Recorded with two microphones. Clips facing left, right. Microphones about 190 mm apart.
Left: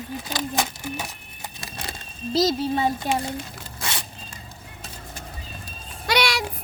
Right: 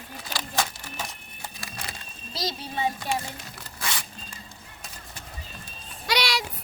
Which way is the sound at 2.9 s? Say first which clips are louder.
Left 4 dB; 20° left (ahead or behind).